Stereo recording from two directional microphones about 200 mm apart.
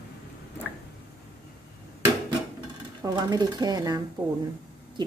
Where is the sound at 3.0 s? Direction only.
20° right (ahead or behind).